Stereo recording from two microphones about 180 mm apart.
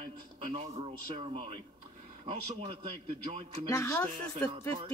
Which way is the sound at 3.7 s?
15° left (ahead or behind).